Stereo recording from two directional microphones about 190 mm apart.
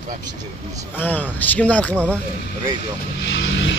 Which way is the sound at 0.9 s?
10° left (ahead or behind).